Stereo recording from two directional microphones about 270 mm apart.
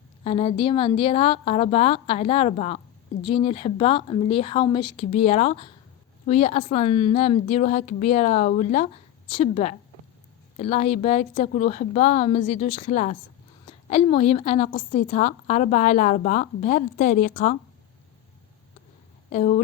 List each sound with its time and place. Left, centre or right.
0.3 s a woman's voice: left
19.3 s a woman's voice: left